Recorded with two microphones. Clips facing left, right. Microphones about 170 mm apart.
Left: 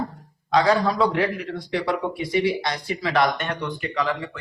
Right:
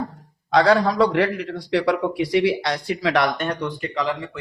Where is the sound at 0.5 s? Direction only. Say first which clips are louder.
Right 3 dB; 70° right (ahead or behind).